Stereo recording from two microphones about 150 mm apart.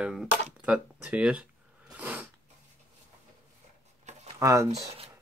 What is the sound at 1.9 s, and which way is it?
Snort, 10° right (ahead or behind).